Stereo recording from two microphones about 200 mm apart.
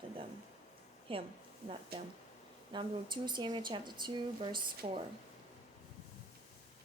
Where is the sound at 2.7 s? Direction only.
25° right (ahead or behind).